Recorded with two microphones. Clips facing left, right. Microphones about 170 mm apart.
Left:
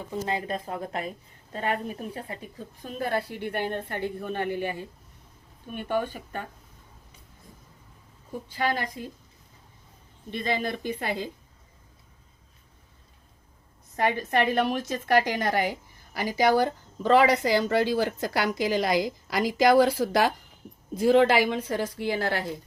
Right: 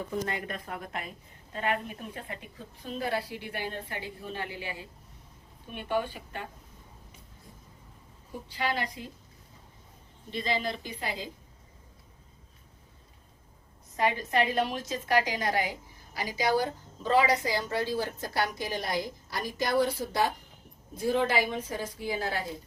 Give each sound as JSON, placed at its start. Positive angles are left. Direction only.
{"t": 0.3, "sound": "a woman's voice", "side_deg": 30}
{"t": 8.4, "sound": "a woman's voice", "side_deg": 50}
{"t": 10.3, "sound": "a woman's voice", "side_deg": 55}
{"t": 13.9, "sound": "a woman's voice", "side_deg": 55}